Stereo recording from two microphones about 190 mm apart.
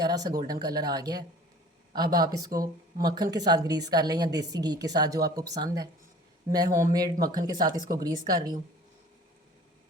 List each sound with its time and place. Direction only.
0.0 s speech: 20° right (ahead or behind)